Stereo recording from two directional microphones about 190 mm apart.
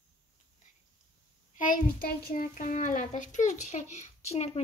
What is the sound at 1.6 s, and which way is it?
A child's voice, 50° left (ahead or behind).